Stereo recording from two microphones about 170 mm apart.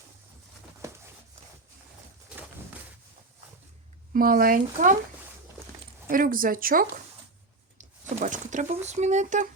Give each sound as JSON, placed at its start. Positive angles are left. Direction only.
{"t": 4.1, "sound": "speech", "side_deg": -55}
{"t": 6.1, "sound": "speech", "side_deg": -55}
{"t": 8.1, "sound": "speech", "side_deg": -45}